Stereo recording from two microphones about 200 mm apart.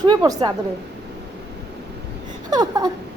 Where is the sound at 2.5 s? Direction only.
20° right (ahead or behind).